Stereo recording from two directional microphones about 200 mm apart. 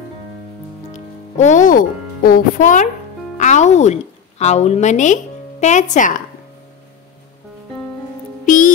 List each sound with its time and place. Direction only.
0.9 s a woman's voice: 40° left (ahead or behind)
8.5 s music: 40° left (ahead or behind)